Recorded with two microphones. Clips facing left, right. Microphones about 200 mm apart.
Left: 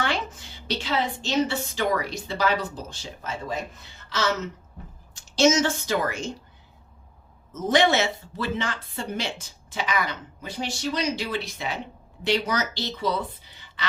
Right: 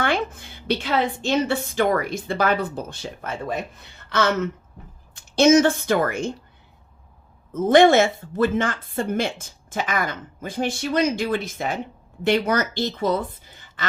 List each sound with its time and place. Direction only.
0.0 s a woman's voice: 55° right (ahead or behind)
7.5 s speech: 55° right (ahead or behind)